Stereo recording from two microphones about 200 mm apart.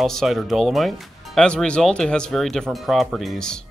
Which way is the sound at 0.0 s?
Centre (ahead or behind).